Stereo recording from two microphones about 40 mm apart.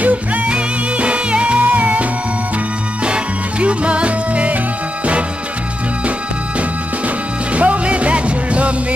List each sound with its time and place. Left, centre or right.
0.0 s music: right
0.5 s music: right
7.5 s music: right